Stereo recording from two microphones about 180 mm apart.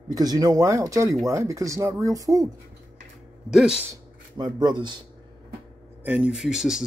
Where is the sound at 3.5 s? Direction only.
5° right (ahead or behind).